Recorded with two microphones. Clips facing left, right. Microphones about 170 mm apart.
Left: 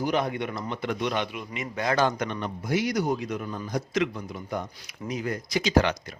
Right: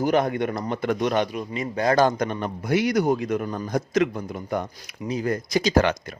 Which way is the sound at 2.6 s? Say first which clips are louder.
Right 5 dB; 60° right (ahead or behind).